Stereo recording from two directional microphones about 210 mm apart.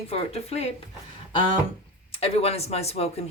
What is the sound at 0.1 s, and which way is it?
Speech, 30° left (ahead or behind).